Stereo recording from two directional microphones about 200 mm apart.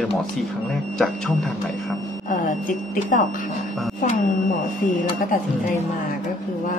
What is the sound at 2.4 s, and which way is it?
Speech, 40° left (ahead or behind).